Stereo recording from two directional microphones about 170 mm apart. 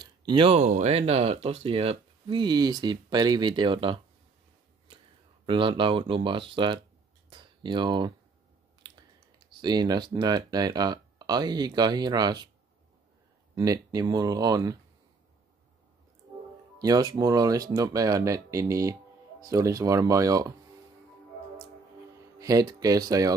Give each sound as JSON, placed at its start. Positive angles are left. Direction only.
{"t": 0.0, "sound": "speech", "side_deg": -25}
{"t": 5.5, "sound": "speech", "side_deg": -30}
{"t": 7.2, "sound": "a sound", "side_deg": -30}
{"t": 8.8, "sound": "typing", "side_deg": -25}
{"t": 9.6, "sound": "speech", "side_deg": -25}
{"t": 13.6, "sound": "speech", "side_deg": -20}
{"t": 16.8, "sound": "speech", "side_deg": -20}
{"t": 22.4, "sound": "speech", "side_deg": -20}